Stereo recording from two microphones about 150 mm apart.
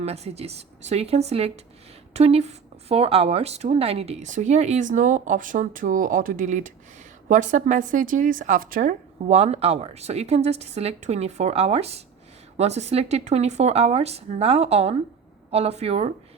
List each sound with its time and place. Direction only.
0.0 s speech: 45° right (ahead or behind)